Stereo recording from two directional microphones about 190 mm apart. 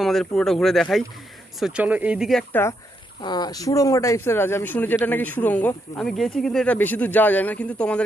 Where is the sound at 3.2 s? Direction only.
20° left (ahead or behind).